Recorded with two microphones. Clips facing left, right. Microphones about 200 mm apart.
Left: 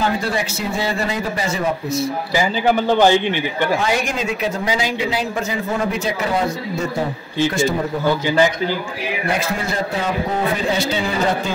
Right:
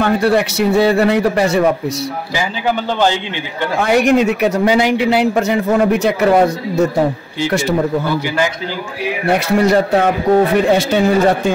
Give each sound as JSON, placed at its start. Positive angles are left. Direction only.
{"t": 0.0, "sound": "speech", "side_deg": -65}
{"t": 3.8, "sound": "speech", "side_deg": -60}
{"t": 9.3, "sound": "speech", "side_deg": -65}